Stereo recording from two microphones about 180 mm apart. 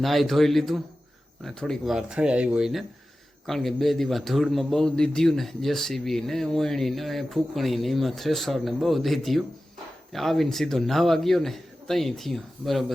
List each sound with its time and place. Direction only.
0.0 s a man's voice: centre (ahead or behind)